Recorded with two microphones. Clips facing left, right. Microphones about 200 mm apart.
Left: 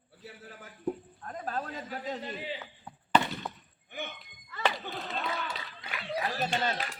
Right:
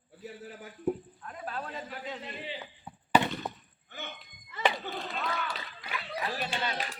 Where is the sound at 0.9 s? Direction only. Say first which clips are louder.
Right 3 dB; 5° right (ahead or behind).